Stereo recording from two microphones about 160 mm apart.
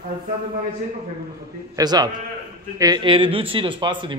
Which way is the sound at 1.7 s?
25° right (ahead or behind).